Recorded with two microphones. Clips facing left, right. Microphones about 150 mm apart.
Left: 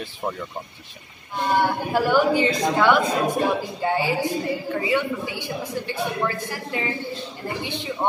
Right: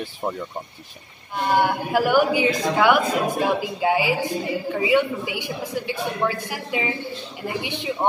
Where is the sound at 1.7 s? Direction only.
10° right (ahead or behind).